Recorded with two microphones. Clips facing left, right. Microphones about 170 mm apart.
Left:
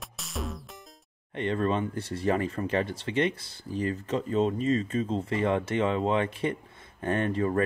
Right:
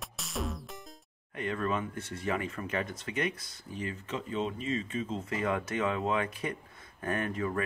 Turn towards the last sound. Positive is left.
turn(degrees=35)  # may be behind; listen again after turning